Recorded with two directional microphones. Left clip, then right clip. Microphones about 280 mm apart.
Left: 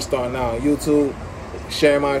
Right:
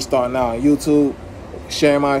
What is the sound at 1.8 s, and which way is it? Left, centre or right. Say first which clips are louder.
Speech: right 1 dB; centre.